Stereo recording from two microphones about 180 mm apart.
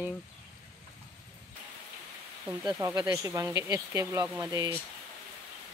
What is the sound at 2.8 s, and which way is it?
Speech, 15° right (ahead or behind).